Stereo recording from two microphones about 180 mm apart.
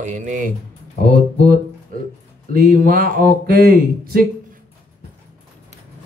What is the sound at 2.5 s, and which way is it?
Speech, 50° right (ahead or behind).